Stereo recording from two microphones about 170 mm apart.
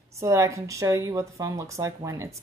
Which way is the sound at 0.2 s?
20° right (ahead or behind).